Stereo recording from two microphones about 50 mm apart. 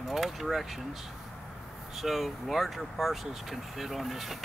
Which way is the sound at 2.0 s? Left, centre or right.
Centre.